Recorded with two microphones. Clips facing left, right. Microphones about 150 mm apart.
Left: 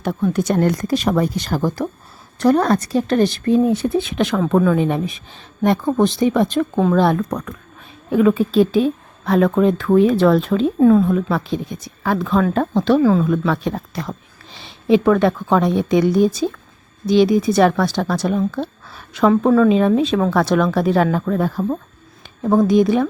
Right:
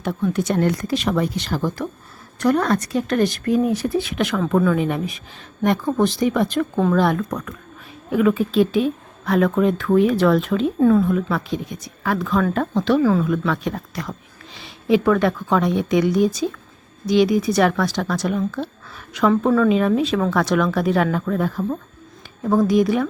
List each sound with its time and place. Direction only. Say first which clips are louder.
0.0 s a woman's voice: left 2 dB; 40° left (ahead or behind)
10.8 s speech: left 3 dB; 20° left (ahead or behind)
13.0 s a woman's voice: left 2 dB; 20° left (ahead or behind)
13.2 s speech: left 3 dB; 30° left (ahead or behind)
19.3 s speech: left 3 dB; 15° left (ahead or behind); by 21.8 s 30° left (ahead or behind)
22.4 s speech: left 3 dB; 20° left (ahead or behind)